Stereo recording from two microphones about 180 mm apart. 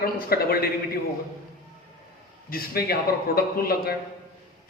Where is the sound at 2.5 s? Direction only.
55° left (ahead or behind).